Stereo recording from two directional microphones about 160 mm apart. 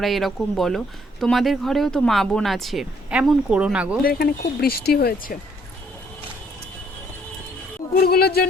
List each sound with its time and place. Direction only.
0.0 s speech: centre (ahead or behind)
4.0 s speech: 70° left (ahead or behind)
7.9 s speech: 75° left (ahead or behind)